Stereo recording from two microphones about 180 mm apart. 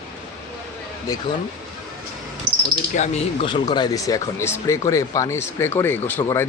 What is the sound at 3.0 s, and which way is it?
Speech, 45° left (ahead or behind).